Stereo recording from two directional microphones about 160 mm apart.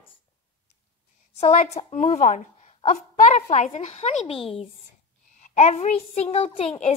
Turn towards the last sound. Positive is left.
turn(degrees=40)  # may be behind; listen again after turning